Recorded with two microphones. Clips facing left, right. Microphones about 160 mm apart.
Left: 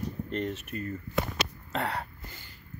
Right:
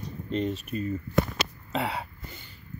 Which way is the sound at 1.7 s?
10° right (ahead or behind).